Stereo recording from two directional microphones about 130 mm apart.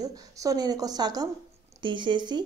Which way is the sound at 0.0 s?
30° right (ahead or behind).